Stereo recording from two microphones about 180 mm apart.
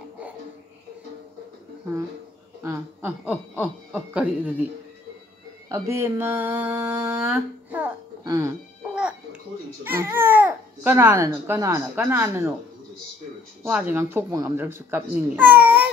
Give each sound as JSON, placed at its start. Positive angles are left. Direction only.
{"t": 2.6, "sound": "speech", "side_deg": -10}
{"t": 5.7, "sound": "speech", "side_deg": -15}
{"t": 9.8, "sound": "speech", "side_deg": -10}
{"t": 13.7, "sound": "speech", "side_deg": -10}